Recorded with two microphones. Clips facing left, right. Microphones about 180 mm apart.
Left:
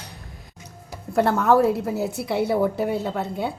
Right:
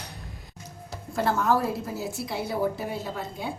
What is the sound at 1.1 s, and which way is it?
A woman's voice, 60° left (ahead or behind).